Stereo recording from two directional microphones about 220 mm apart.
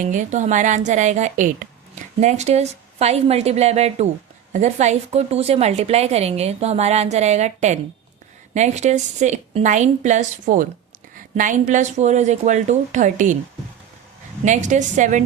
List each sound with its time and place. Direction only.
0.0 s a woman's voice: 35° right (ahead or behind)
14.4 s a woman's voice: 35° right (ahead or behind)